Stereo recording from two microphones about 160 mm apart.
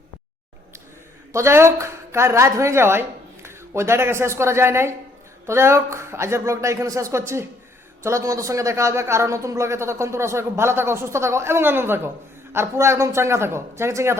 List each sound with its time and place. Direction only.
1.3 s a man's voice: 15° right (ahead or behind)